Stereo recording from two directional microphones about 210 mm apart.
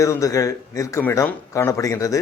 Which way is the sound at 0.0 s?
15° left (ahead or behind).